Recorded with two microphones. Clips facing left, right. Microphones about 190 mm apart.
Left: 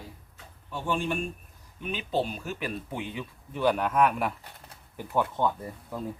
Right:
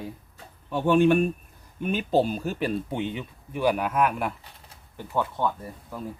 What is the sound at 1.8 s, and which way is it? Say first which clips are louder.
Speech: right 6 dB; 45° right (ahead or behind).